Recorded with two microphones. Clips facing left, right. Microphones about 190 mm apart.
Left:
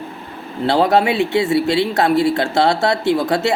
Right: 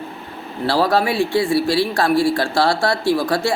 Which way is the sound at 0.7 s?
20° left (ahead or behind).